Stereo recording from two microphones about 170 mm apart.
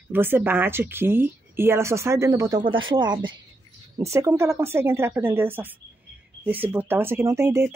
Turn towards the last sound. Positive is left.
turn(degrees=-15)  # may be behind; listen again after turning